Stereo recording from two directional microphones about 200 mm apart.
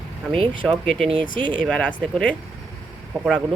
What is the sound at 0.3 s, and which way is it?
Speech, 25° right (ahead or behind).